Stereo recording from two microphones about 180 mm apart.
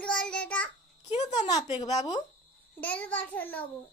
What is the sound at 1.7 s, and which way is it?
Speech, 35° left (ahead or behind).